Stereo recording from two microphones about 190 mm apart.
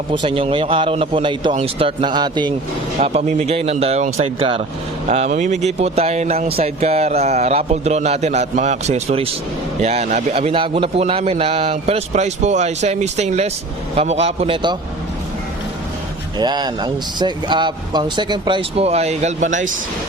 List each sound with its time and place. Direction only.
0.1 s speech: 25° right (ahead or behind)
3.0 s speech: 35° right (ahead or behind)
16.4 s speech: 20° right (ahead or behind); by 19.7 s 40° right (ahead or behind)